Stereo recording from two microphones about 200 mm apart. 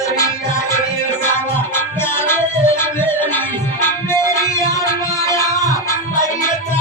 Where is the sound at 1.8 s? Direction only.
10° left (ahead or behind).